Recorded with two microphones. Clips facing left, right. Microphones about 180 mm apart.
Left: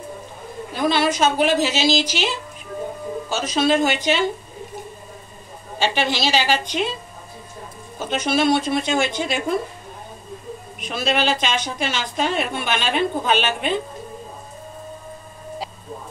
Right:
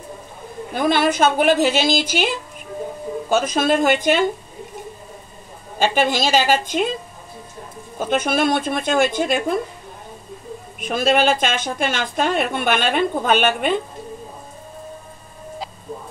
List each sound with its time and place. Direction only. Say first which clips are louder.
0.7 s a woman's voice: right 2 dB; 55° right (ahead or behind)
5.8 s a woman's voice: right 3 dB; 50° right (ahead or behind)
8.0 s a woman's voice: right 1 dB; 50° right (ahead or behind)
10.8 s a woman's voice: right 5 dB; 50° right (ahead or behind)